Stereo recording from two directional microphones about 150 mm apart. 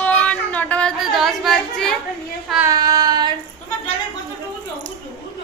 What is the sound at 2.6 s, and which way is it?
Child singing, 25° right (ahead or behind).